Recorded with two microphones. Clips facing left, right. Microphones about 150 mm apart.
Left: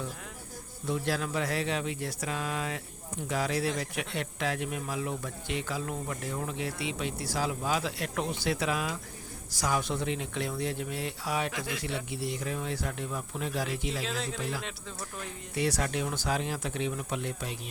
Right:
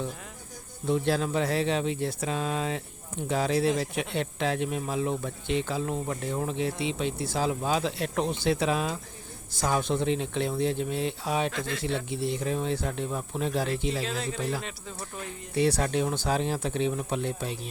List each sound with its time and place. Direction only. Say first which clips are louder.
0.9 s speech: right 5 dB; 25° right (ahead or behind)
11.5 s speech: right 3 dB; 10° left (ahead or behind)
11.9 s speech: right 5 dB; 25° right (ahead or behind)
14.0 s speech: right 3 dB; centre (ahead or behind)
15.5 s speech: right 5 dB; 30° right (ahead or behind)